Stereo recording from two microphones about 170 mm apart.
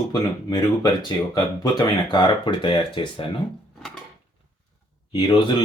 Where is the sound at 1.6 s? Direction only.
25° left (ahead or behind).